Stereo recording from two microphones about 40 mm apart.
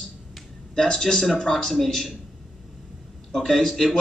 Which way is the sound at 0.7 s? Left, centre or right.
Centre.